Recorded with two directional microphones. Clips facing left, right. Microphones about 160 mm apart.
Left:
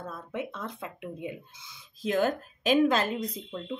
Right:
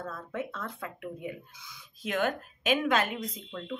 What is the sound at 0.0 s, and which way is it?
A woman's voice, 15° left (ahead or behind).